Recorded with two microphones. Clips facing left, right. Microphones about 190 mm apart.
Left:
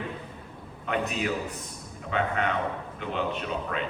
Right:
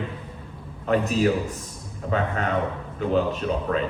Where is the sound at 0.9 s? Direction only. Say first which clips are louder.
Right 8 dB; 35° right (ahead or behind).